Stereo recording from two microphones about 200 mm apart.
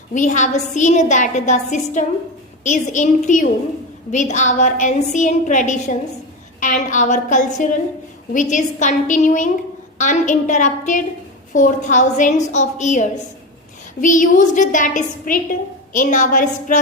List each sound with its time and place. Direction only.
0.1 s a woman's voice: 40° left (ahead or behind)